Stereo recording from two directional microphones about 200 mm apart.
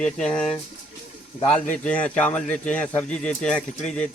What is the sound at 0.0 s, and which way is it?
Speech, 5° left (ahead or behind).